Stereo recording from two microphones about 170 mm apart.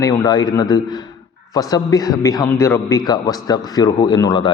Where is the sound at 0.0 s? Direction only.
20° left (ahead or behind).